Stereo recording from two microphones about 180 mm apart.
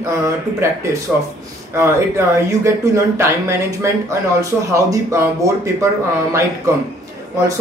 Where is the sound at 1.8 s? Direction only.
15° right (ahead or behind).